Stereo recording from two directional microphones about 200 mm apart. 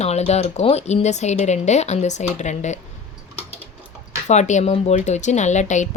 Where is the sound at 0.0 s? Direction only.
35° left (ahead or behind).